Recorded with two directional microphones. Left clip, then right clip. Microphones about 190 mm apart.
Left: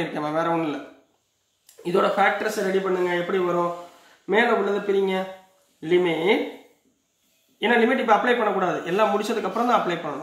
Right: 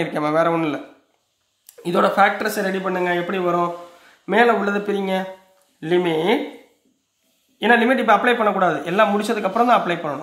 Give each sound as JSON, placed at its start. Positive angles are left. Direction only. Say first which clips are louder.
{"t": 0.0, "sound": "speech", "louder": "right 6 dB", "side_deg": -40}
{"t": 1.8, "sound": "speech", "louder": "right 4 dB", "side_deg": -50}
{"t": 7.5, "sound": "speech", "louder": "right 4 dB", "side_deg": -45}